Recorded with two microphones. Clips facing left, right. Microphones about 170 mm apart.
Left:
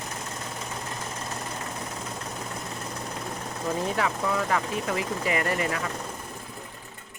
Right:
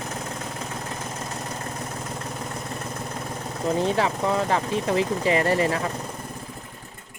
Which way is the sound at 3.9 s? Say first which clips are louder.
Right 4 dB; 30° right (ahead or behind).